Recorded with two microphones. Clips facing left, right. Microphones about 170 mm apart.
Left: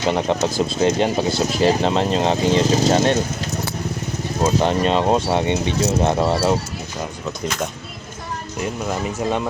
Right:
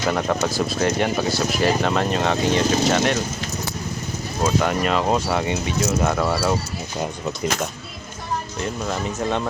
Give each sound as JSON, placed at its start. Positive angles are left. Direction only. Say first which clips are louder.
{"t": 0.0, "sound": "speech", "louder": "left 2 dB", "side_deg": 25}
{"t": 4.4, "sound": "speech", "louder": "left 3 dB", "side_deg": 25}
{"t": 8.6, "sound": "speech", "louder": "left 4 dB", "side_deg": 10}